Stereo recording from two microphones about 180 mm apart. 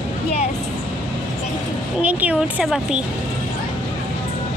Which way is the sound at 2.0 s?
5° right (ahead or behind).